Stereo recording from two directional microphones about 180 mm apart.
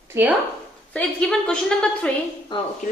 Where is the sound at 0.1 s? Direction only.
10° right (ahead or behind).